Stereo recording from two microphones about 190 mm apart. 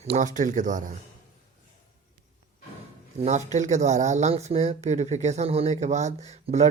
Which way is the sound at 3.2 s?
40° right (ahead or behind).